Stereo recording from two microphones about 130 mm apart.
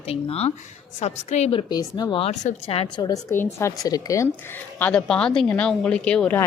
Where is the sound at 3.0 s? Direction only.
30° left (ahead or behind).